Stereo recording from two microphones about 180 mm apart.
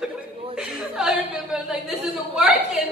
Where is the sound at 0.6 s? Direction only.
5° right (ahead or behind).